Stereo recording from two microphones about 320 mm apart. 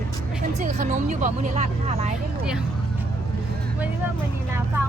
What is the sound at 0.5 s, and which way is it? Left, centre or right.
Speech, right.